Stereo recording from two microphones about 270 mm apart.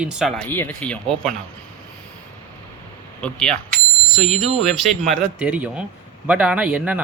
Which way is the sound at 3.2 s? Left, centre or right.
Centre.